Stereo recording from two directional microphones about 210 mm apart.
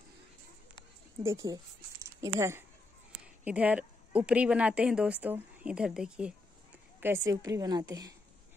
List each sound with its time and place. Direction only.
1.2 s a woman's voice: 15° right (ahead or behind)